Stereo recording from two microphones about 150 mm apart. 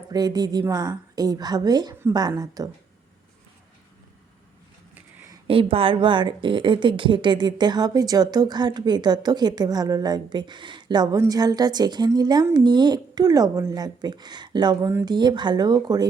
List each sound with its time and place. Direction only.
0.1 s a woman's voice: 25° right (ahead or behind)
5.5 s a woman's voice: 35° right (ahead or behind)